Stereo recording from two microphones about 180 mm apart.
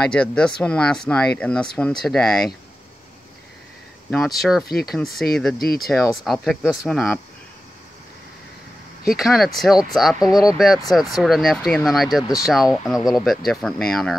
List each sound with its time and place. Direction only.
0.0 s speech: 5° left (ahead or behind)
4.4 s speech: centre (ahead or behind)
4.6 s speech: 60° left (ahead or behind)
4.9 s speech: centre (ahead or behind)
5.6 s speech: 55° left (ahead or behind)
6.2 s speech: centre (ahead or behind)
9.1 s speech: centre (ahead or behind)